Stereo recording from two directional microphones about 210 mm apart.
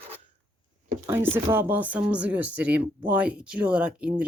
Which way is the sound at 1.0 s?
10° right (ahead or behind).